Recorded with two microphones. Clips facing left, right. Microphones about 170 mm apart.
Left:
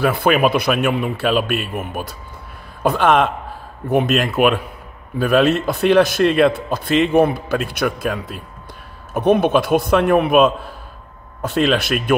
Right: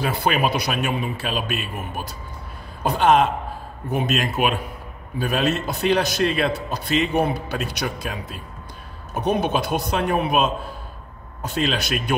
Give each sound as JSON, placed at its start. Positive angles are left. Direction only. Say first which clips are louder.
{"t": 0.0, "sound": "a man's voice", "louder": "left 6 dB", "side_deg": 55}